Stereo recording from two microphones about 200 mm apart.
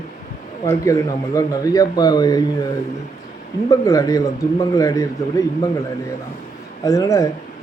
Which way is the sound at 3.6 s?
15° left (ahead or behind).